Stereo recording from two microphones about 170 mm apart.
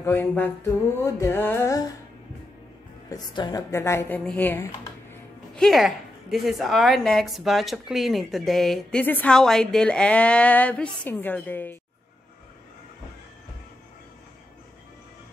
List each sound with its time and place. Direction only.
0.0 s music: 10° left (ahead or behind)
3.1 s music: 25° left (ahead or behind)
5.1 s speech: 5° left (ahead or behind)